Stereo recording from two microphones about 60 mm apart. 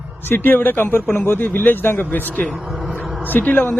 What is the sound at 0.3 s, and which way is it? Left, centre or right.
Speech, left.